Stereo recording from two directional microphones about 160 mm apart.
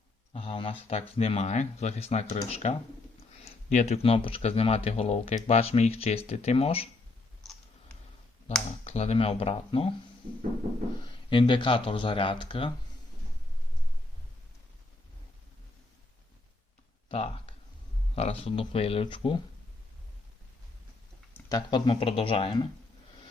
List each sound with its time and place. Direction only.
0.3 s speech: 35° left (ahead or behind)
8.8 s speech: 40° left (ahead or behind)
11.0 s speech: 30° left (ahead or behind)
17.1 s speech: 35° left (ahead or behind)
21.5 s speech: 30° left (ahead or behind)